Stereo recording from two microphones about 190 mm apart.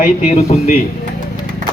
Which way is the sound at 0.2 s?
35° left (ahead or behind).